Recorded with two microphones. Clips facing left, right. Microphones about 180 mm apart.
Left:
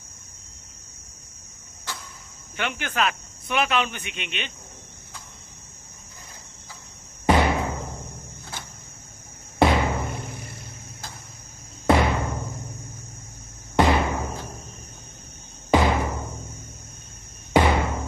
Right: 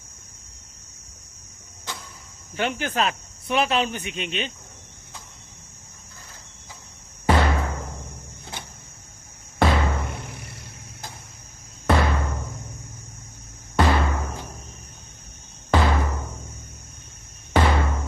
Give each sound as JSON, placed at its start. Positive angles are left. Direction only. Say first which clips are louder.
{"t": 1.9, "sound": "a sound", "louder": "even", "side_deg": -20}
{"t": 2.6, "sound": "speech", "louder": "right 2 dB", "side_deg": -35}
{"t": 7.3, "sound": "music", "louder": "left 1 dB", "side_deg": 15}
{"t": 9.6, "sound": "music", "louder": "left 2 dB", "side_deg": 20}
{"t": 11.9, "sound": "music", "louder": "left 2 dB", "side_deg": 15}
{"t": 13.7, "sound": "music", "louder": "left 1 dB", "side_deg": 15}
{"t": 15.7, "sound": "music", "louder": "left 2 dB", "side_deg": 15}
{"t": 17.5, "sound": "music", "louder": "left 2 dB", "side_deg": 15}